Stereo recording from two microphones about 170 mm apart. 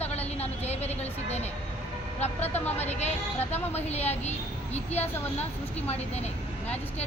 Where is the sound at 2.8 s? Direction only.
40° left (ahead or behind).